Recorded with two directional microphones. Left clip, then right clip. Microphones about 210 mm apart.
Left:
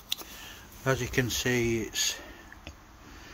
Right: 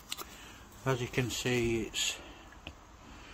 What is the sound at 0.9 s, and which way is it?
Speech, 10° left (ahead or behind).